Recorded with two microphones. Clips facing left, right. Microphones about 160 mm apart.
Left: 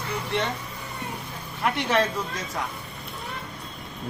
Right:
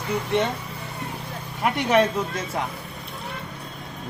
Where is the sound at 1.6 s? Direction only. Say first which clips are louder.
Right 4 dB; 15° right (ahead or behind).